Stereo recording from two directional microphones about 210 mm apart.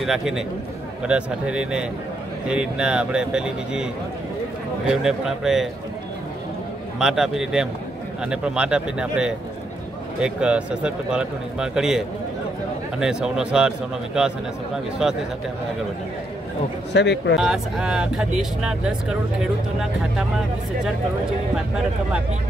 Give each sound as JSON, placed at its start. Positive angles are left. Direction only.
{"t": 0.0, "sound": "speech", "side_deg": 0}
{"t": 7.0, "sound": "speech", "side_deg": 0}
{"t": 13.0, "sound": "speech", "side_deg": -5}
{"t": 16.9, "sound": "speech", "side_deg": 55}
{"t": 17.4, "sound": "speech", "side_deg": -5}